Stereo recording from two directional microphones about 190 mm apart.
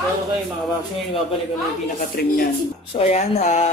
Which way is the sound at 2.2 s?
50° left (ahead or behind).